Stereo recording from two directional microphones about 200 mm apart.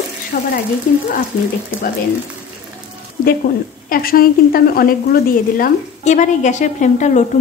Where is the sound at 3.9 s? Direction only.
45° left (ahead or behind).